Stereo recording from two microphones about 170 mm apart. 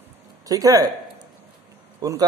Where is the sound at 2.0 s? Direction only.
20° right (ahead or behind).